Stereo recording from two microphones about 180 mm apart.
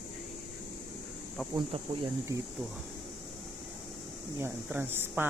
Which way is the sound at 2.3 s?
15° right (ahead or behind).